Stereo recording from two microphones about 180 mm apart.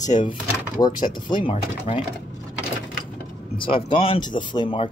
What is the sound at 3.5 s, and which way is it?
Speech, 30° left (ahead or behind).